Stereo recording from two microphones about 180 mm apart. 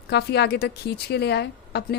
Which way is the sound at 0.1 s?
65° left (ahead or behind).